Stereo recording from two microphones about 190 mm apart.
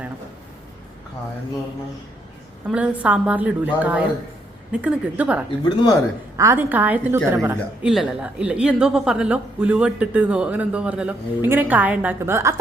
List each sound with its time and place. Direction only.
2.6 s a woman's voice: 5° right (ahead or behind)
5.5 s speech: 25° left (ahead or behind)
6.3 s a woman's voice: 15° right (ahead or behind)